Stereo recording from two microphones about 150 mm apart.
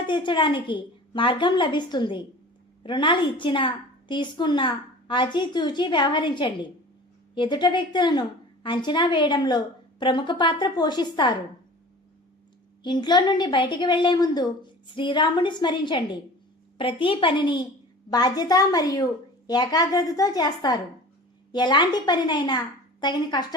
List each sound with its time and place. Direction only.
0.1 s a woman's voice: 30° left (ahead or behind)
12.8 s a woman's voice: 30° left (ahead or behind)